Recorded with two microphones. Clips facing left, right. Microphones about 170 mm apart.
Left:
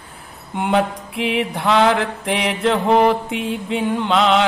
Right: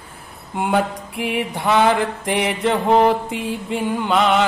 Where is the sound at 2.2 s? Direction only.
70° left (ahead or behind).